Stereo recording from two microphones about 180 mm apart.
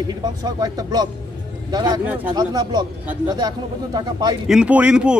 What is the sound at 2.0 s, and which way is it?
Speech, 10° right (ahead or behind).